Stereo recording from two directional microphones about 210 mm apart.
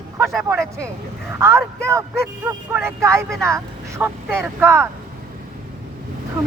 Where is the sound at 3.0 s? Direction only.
15° right (ahead or behind).